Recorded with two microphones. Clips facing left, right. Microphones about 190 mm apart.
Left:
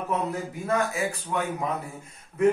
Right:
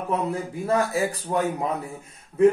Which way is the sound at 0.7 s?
35° right (ahead or behind).